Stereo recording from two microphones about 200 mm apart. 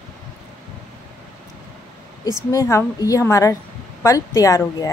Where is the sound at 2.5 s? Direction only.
15° left (ahead or behind).